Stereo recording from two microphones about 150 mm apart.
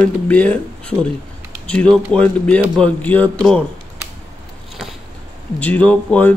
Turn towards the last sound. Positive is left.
turn(degrees=10)  # may be behind; listen again after turning